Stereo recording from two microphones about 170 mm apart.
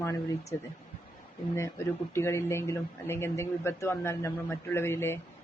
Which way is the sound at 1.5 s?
15° left (ahead or behind).